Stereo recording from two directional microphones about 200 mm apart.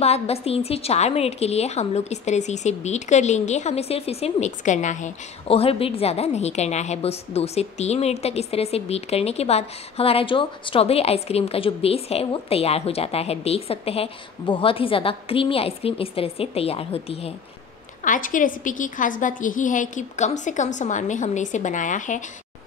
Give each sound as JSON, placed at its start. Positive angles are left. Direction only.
{"t": 0.0, "sound": "a woman's voice", "side_deg": 30}
{"t": 18.0, "sound": "a woman's voice", "side_deg": 40}